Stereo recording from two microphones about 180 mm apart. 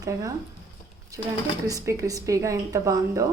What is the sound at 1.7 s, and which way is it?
A woman's voice, 20° right (ahead or behind).